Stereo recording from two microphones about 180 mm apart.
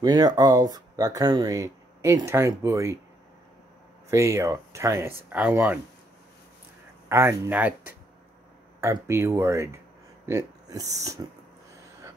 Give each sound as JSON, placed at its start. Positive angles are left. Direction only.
{"t": 0.0, "sound": "speech", "side_deg": -20}
{"t": 4.1, "sound": "speech", "side_deg": -15}
{"t": 7.1, "sound": "speech", "side_deg": -15}